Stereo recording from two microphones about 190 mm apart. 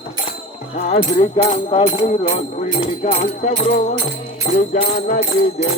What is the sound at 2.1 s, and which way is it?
Speech, 35° left (ahead or behind).